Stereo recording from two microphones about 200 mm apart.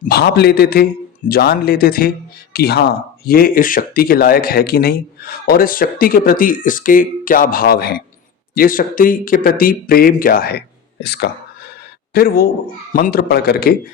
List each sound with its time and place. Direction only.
0.0 s speech: 55° left (ahead or behind)